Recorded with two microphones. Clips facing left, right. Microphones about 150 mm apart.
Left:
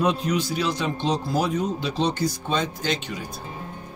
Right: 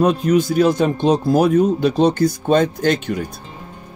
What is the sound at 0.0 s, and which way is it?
Speech, 50° right (ahead or behind).